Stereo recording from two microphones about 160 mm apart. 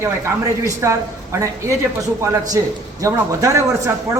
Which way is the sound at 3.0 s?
20° right (ahead or behind).